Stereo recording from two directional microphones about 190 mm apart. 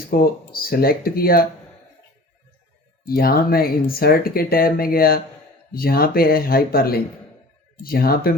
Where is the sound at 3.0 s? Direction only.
50° left (ahead or behind).